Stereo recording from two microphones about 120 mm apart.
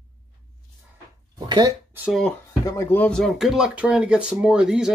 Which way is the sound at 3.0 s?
5° left (ahead or behind).